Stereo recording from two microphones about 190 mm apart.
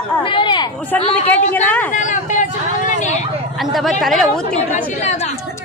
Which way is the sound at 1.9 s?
40° left (ahead or behind).